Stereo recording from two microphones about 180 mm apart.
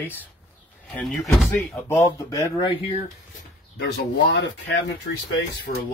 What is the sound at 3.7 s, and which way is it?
Speech, 80° left.